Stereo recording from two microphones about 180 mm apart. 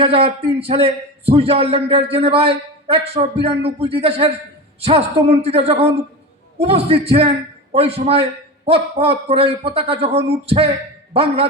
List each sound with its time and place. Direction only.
0.0 s a man's voice: 35° right (ahead or behind)